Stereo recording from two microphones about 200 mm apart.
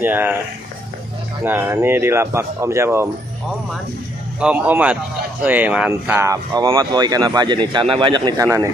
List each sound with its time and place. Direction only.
0.0 s speech: 10° right (ahead or behind)
1.4 s speech: 10° right (ahead or behind)
4.4 s speech: 5° right (ahead or behind)